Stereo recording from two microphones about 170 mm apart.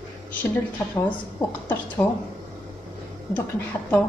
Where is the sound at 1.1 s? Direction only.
10° left (ahead or behind).